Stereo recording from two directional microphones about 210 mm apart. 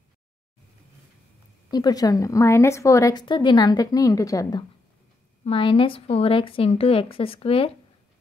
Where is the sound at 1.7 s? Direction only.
20° left (ahead or behind).